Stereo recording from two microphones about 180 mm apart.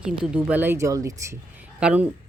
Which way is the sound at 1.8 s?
5° right (ahead or behind).